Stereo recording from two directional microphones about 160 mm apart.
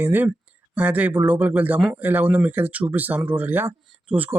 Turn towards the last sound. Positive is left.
turn(degrees=-10)  # may be behind; listen again after turning